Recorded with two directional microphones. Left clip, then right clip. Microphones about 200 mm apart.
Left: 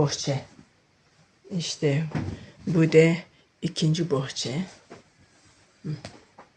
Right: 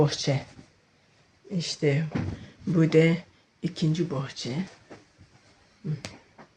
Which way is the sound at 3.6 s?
45° left (ahead or behind).